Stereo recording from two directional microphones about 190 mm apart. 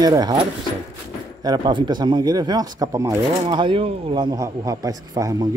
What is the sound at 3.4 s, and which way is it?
A man's voice, 25° right (ahead or behind).